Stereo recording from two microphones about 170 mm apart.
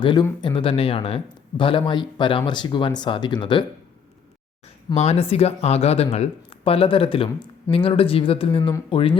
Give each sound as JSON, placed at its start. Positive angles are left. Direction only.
{"t": 0.0, "sound": "speech", "side_deg": 30}
{"t": 4.9, "sound": "speech", "side_deg": 35}